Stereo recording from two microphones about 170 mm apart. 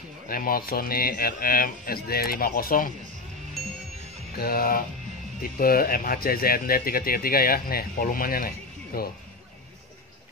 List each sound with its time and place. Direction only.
0.3 s speech: 60° left (ahead or behind)
4.3 s speech: 65° left (ahead or behind)